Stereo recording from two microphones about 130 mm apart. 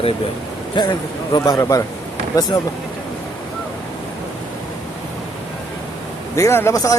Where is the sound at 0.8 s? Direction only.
35° left (ahead or behind).